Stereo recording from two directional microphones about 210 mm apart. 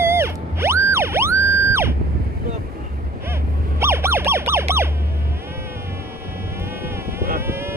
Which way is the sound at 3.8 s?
10° right (ahead or behind).